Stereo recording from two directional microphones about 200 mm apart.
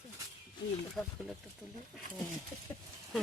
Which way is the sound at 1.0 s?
Centre (ahead or behind).